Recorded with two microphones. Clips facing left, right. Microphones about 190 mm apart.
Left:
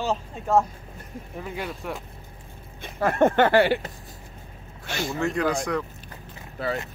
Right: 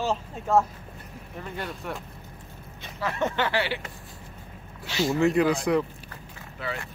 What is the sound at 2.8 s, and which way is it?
Speech, 50° left (ahead or behind).